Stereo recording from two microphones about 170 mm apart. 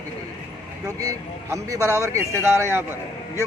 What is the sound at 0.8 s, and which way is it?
A man's voice, 20° right (ahead or behind).